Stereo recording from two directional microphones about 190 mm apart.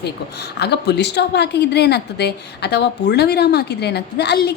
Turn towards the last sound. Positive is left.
turn(degrees=60)  # may be behind; listen again after turning